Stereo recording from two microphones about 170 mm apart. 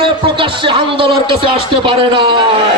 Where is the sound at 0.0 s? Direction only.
30° right (ahead or behind).